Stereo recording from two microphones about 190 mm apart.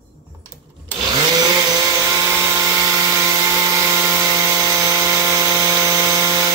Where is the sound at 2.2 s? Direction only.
15° right (ahead or behind).